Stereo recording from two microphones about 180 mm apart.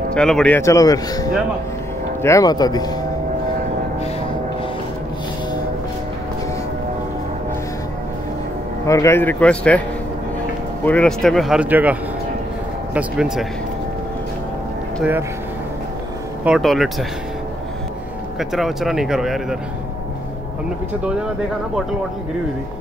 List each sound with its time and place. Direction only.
0.1 s speech: 5° left (ahead or behind)
0.6 s a man's voice: 15° left (ahead or behind)
8.8 s a man's voice: 15° left (ahead or behind); by 13.5 s 5° right (ahead or behind)
16.4 s speech: centre (ahead or behind)
18.4 s speech: centre (ahead or behind)
21.0 s speech: 5° right (ahead or behind)